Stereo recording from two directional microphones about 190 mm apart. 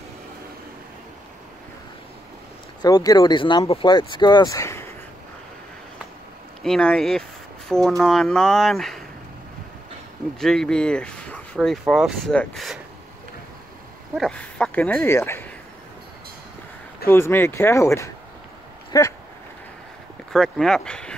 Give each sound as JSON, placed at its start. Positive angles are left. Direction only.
{"t": 2.8, "sound": "speech", "side_deg": 20}
{"t": 6.6, "sound": "speech", "side_deg": 5}
{"t": 10.4, "sound": "speech", "side_deg": 5}
{"t": 14.1, "sound": "speech", "side_deg": 5}
{"t": 17.1, "sound": "speech", "side_deg": 10}
{"t": 18.9, "sound": "a sound", "side_deg": 15}
{"t": 20.3, "sound": "speech", "side_deg": 0}